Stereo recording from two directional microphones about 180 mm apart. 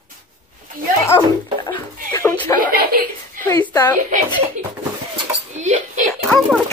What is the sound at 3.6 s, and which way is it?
Speech, 10° left (ahead or behind).